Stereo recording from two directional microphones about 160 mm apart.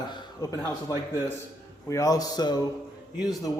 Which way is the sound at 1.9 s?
20° left (ahead or behind).